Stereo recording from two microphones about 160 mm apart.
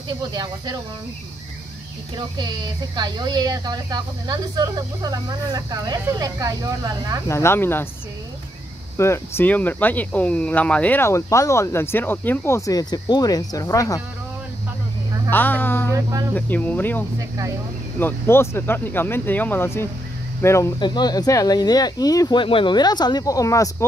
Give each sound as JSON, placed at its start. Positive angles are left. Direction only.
{"t": 0.3, "sound": "speech", "side_deg": -25}
{"t": 2.1, "sound": "speech", "side_deg": -25}
{"t": 7.2, "sound": "speech", "side_deg": 15}
{"t": 8.9, "sound": "speech", "side_deg": 15}
{"t": 15.2, "sound": "speech", "side_deg": 10}
{"t": 15.9, "sound": "speech", "side_deg": -20}
{"t": 16.3, "sound": "speech", "side_deg": 10}
{"t": 20.8, "sound": "speech", "side_deg": 25}